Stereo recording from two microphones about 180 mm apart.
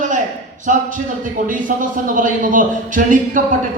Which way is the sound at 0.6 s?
45° right (ahead or behind).